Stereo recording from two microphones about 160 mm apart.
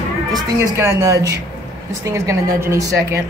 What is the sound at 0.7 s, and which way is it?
A woman's voice, 15° right (ahead or behind).